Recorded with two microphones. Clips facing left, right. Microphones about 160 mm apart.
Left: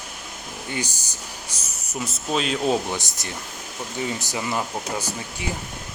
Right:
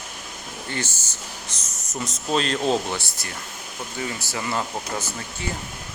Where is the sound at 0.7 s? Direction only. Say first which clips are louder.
Left 1 dB; 15° left (ahead or behind).